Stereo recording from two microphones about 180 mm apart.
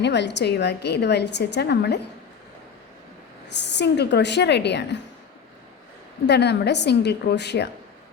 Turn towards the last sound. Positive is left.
turn(degrees=70)  # may be behind; listen again after turning